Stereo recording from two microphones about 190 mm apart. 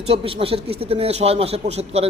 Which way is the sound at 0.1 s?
30° right (ahead or behind).